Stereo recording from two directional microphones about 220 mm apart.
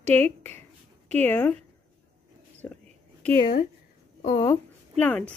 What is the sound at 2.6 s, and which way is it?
Whispering, 10° left (ahead or behind).